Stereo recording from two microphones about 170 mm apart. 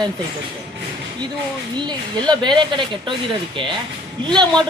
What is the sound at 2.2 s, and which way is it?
Speech, 25° right (ahead or behind).